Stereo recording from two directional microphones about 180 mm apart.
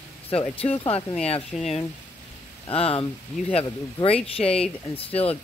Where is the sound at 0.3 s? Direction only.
35° left (ahead or behind).